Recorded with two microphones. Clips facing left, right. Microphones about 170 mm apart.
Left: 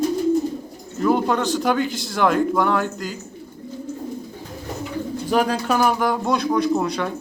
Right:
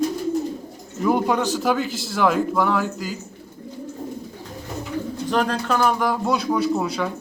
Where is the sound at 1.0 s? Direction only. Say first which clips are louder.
Left 1 dB; 10° right (ahead or behind).